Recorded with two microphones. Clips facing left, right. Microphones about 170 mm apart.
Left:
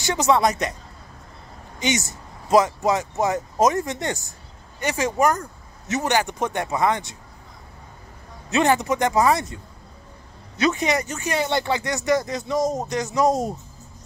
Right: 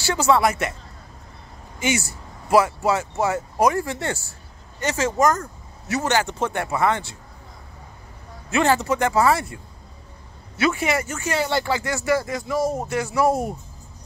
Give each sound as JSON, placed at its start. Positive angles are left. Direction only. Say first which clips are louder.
{"t": 0.0, "sound": "speech", "louder": "even", "side_deg": 20}
{"t": 1.8, "sound": "speech", "louder": "even", "side_deg": 20}
{"t": 8.5, "sound": "speech", "louder": "even", "side_deg": 20}
{"t": 10.6, "sound": "speech", "louder": "even", "side_deg": 20}